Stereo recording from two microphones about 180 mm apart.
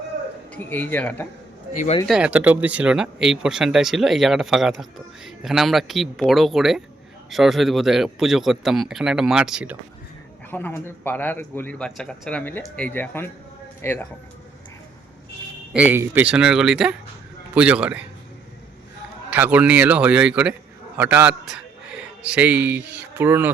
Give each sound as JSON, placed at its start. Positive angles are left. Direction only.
{"t": 0.5, "sound": "speech", "side_deg": 10}
{"t": 1.7, "sound": "speech", "side_deg": 40}
{"t": 2.0, "sound": "speech", "side_deg": -5}
{"t": 10.5, "sound": "speech", "side_deg": 10}
{"t": 15.7, "sound": "a man's voice", "side_deg": -10}
{"t": 19.3, "sound": "a man's voice", "side_deg": -10}